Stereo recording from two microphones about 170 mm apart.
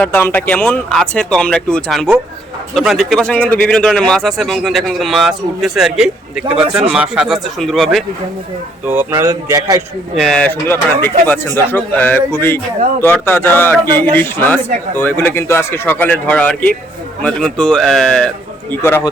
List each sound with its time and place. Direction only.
0.0 s a man's voice: 10° left (ahead or behind)
8.9 s speech: 15° right (ahead or behind)
10.2 s a man's voice: 5° left (ahead or behind)